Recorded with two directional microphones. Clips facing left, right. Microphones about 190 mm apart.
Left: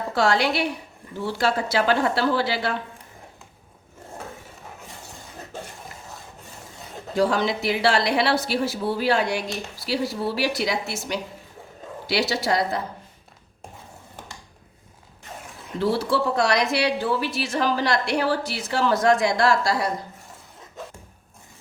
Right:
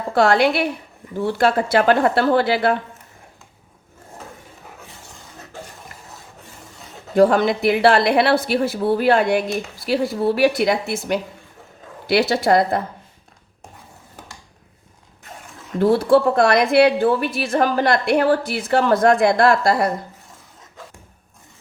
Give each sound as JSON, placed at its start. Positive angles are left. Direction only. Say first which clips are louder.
{"t": 0.1, "sound": "a woman's voice", "louder": "right 6 dB", "side_deg": -55}
{"t": 7.2, "sound": "a woman's voice", "louder": "right 7 dB", "side_deg": -55}
{"t": 15.8, "sound": "a woman's voice", "louder": "right 8 dB", "side_deg": -50}